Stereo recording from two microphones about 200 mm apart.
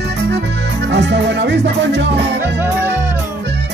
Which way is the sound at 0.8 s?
60° right (ahead or behind).